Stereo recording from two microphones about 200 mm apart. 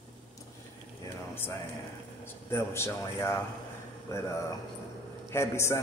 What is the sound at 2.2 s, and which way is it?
A man's voice, 10° left (ahead or behind).